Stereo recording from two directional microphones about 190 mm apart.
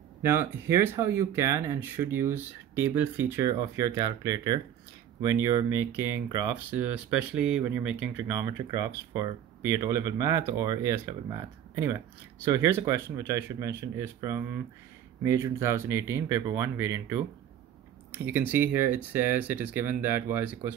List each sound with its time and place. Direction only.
0.2 s speech: 15° right (ahead or behind)